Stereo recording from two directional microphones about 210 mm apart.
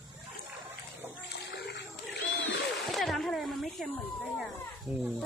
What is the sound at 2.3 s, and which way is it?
Splash, 55° left (ahead or behind).